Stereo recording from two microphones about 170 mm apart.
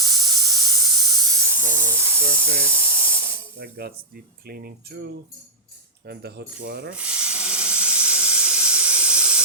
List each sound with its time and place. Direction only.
0.0 s steam: 20° right (ahead or behind)
3.6 s speech: 65° right (ahead or behind)
6.1 s speech: 70° right (ahead or behind)
6.9 s steam: 5° right (ahead or behind)